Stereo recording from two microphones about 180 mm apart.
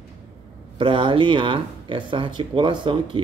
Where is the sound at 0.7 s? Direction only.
30° right (ahead or behind).